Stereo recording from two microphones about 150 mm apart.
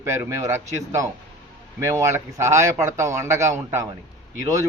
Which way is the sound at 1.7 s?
20° right (ahead or behind).